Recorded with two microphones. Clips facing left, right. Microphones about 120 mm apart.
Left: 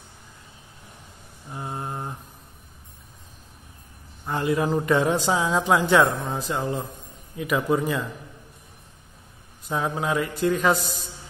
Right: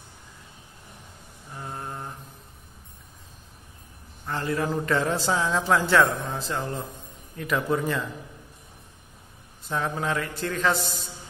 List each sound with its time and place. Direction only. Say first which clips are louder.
1.5 s mantra: left 4 dB; 20° left (ahead or behind)
4.3 s a man's voice: left 4 dB; 20° left (ahead or behind)
6.3 s mantra: left 3 dB; 10° left (ahead or behind)
7.3 s a man's voice: left 3 dB; 5° left (ahead or behind)
9.7 s a man's voice: left 2 dB; 10° left (ahead or behind)